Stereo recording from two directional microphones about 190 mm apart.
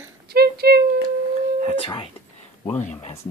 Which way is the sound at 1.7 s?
30° left (ahead or behind).